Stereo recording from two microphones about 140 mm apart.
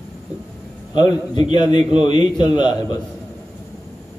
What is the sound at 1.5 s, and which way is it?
A man's voice, 30° left (ahead or behind).